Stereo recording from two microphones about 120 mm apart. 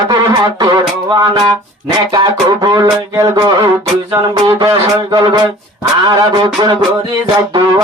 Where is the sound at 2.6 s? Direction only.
35° right (ahead or behind).